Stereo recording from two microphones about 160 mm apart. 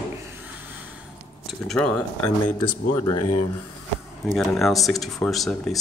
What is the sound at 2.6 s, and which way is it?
Speech, 25° left (ahead or behind).